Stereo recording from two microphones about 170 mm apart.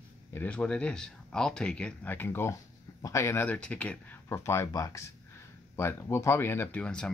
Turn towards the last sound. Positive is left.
turn(degrees=5)  # may be behind; listen again after turning